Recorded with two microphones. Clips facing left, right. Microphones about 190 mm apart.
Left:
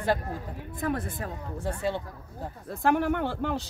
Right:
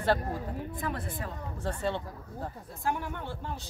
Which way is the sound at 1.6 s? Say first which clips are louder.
Left 2 dB; 10° left (ahead or behind).